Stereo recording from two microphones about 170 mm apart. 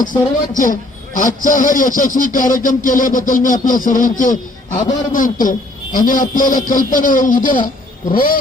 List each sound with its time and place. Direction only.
0.0 s a man's voice: 50° left (ahead or behind)